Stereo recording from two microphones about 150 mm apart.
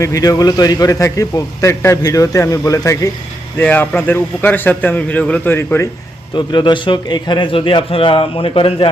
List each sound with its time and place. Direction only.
0.0 s a man's voice: 20° left (ahead or behind)
6.3 s a man's voice: 30° left (ahead or behind)